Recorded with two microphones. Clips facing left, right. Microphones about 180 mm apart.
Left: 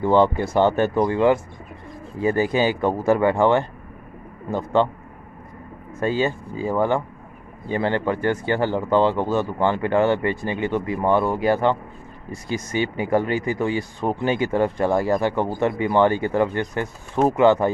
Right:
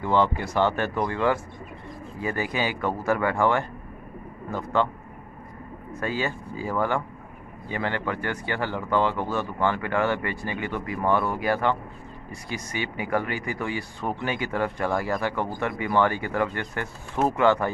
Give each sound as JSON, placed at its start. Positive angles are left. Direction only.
{"t": 0.0, "sound": "speech", "side_deg": 45}
{"t": 0.4, "sound": "speech", "side_deg": 25}
{"t": 5.9, "sound": "speech", "side_deg": 25}